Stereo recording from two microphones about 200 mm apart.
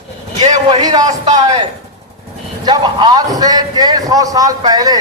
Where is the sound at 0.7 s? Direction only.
20° right (ahead or behind).